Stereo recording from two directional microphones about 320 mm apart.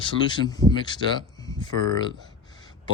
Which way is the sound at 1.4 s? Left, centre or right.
Centre.